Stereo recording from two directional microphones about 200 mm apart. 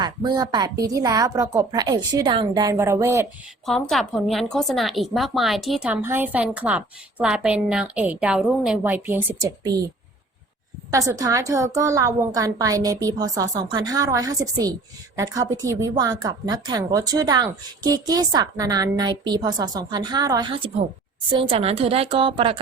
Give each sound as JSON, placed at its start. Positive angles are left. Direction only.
{"t": 0.0, "sound": "a woman's voice", "side_deg": -20}
{"t": 3.7, "sound": "a woman's voice", "side_deg": 0}
{"t": 10.9, "sound": "a woman's voice", "side_deg": -15}